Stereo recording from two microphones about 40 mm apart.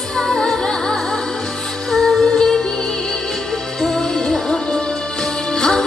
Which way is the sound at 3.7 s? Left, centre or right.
Centre.